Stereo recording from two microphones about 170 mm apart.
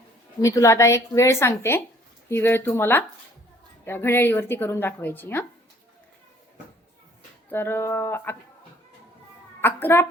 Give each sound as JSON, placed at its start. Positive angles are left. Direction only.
{"t": 0.4, "sound": "a woman's voice", "side_deg": 20}
{"t": 7.5, "sound": "a woman's voice", "side_deg": 15}
{"t": 9.6, "sound": "a child's voice", "side_deg": 15}